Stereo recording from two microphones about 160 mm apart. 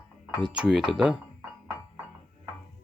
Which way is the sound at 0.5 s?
5° right (ahead or behind).